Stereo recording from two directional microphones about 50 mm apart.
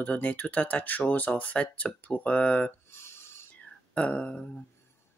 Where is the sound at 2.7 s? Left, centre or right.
Left.